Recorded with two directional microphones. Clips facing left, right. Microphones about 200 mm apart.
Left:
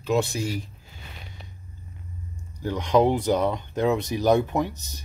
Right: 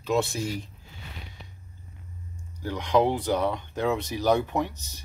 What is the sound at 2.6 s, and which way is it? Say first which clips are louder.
Speech: left 3 dB; 15° left (ahead or behind).